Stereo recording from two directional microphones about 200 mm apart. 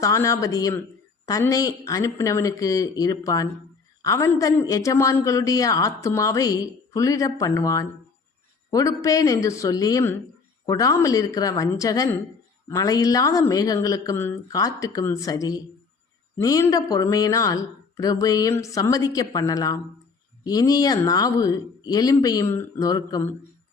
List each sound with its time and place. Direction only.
0.0 s a man's voice: 15° left (ahead or behind)